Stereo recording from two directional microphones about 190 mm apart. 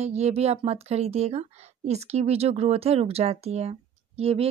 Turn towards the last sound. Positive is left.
turn(degrees=-30)  # may be behind; listen again after turning